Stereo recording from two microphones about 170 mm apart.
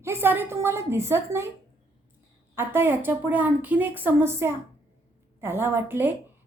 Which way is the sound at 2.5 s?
15° right (ahead or behind).